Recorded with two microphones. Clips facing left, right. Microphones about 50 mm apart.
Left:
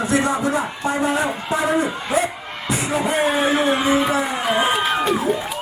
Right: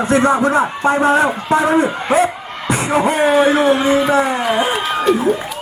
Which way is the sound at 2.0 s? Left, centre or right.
Right.